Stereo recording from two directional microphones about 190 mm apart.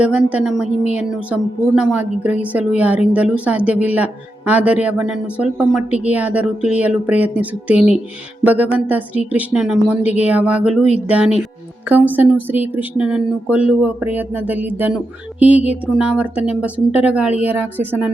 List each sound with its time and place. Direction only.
0.0 s speech: 5° right (ahead or behind)
10.0 s speech: 35° left (ahead or behind)
10.2 s speech: 5° right (ahead or behind)